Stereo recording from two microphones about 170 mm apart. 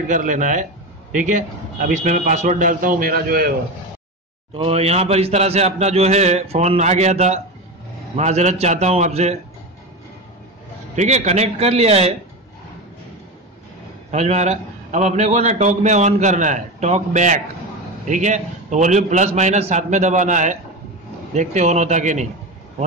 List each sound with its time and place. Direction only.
0.1 s a man's voice: 50° right (ahead or behind)
4.6 s a man's voice: 35° right (ahead or behind)
11.0 s a man's voice: 40° right (ahead or behind)
14.1 s a man's voice: 40° right (ahead or behind)